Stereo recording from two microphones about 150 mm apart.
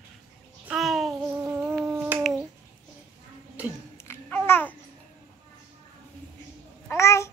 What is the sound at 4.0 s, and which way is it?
Babbling, 15° left (ahead or behind).